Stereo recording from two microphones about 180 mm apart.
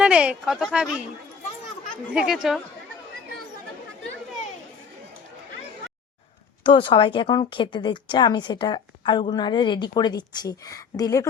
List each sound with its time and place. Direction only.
0.0 s speech: 5° right (ahead or behind)
2.1 s speech: 5° right (ahead or behind)
6.6 s speech: 25° left (ahead or behind)